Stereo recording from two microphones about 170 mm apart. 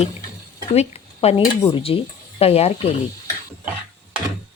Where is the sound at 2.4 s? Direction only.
35° left (ahead or behind).